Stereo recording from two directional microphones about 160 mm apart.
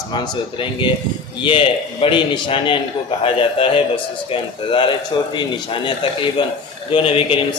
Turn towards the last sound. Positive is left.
turn(degrees=35)  # may be behind; listen again after turning